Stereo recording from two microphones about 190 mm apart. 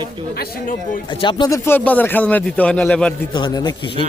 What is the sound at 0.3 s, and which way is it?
Speech, 55° left (ahead or behind).